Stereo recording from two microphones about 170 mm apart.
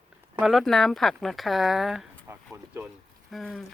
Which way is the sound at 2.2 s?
15° right (ahead or behind).